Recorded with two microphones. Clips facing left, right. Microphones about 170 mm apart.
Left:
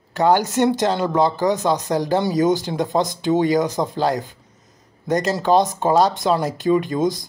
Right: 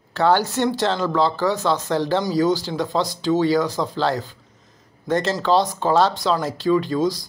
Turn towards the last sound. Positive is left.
turn(degrees=20)  # may be behind; listen again after turning